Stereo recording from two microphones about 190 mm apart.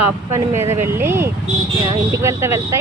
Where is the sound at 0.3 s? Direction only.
15° right (ahead or behind).